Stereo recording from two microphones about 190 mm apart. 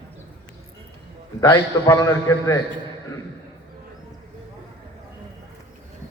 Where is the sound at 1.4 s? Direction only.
20° left (ahead or behind).